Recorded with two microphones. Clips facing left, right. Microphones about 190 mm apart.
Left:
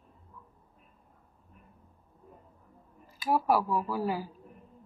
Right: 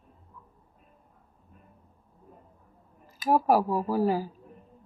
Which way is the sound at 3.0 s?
45° right (ahead or behind).